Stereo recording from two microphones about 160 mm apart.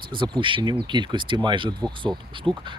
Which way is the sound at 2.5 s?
10° right (ahead or behind).